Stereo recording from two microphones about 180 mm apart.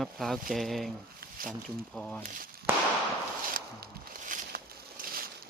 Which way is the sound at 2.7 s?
10° right (ahead or behind).